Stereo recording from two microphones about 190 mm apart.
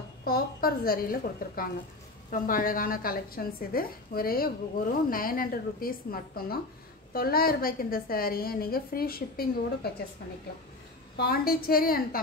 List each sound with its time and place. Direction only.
0.2 s a woman's voice: 50° left (ahead or behind)
11.1 s a woman's voice: 55° left (ahead or behind)